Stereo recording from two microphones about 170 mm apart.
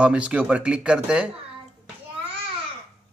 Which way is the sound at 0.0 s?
5° right (ahead or behind).